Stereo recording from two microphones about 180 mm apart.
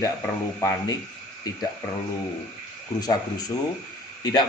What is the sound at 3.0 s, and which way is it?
A man's voice, 20° left (ahead or behind).